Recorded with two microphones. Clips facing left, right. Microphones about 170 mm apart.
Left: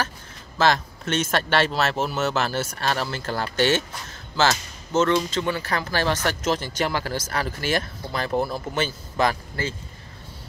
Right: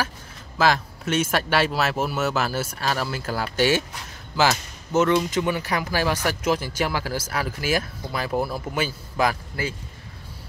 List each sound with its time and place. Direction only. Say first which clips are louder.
0.6 s speech: even; 5° right (ahead or behind)